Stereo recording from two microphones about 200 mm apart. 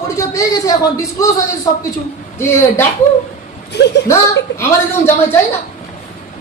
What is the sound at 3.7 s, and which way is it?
Speech, 55° left (ahead or behind).